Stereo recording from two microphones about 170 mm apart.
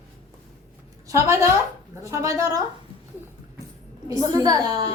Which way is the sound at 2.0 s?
20° right (ahead or behind).